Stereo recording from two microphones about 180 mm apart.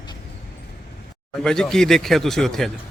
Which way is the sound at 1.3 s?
5° left (ahead or behind).